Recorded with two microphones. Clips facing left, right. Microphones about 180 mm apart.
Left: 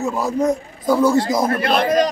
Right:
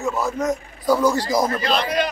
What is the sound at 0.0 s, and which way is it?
Speech, 35° left (ahead or behind).